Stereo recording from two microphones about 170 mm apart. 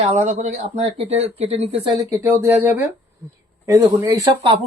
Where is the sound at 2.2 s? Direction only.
15° right (ahead or behind).